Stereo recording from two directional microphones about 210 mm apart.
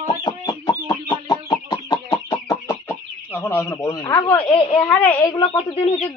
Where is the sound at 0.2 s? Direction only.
20° left (ahead or behind).